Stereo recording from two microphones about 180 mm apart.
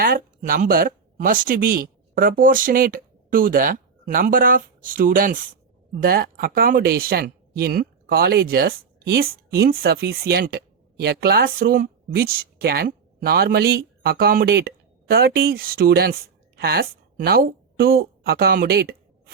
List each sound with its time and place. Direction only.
0.0 s a woman's voice: 50° right (ahead or behind)